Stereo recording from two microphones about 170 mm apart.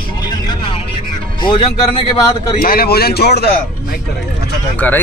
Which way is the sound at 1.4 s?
30° left (ahead or behind).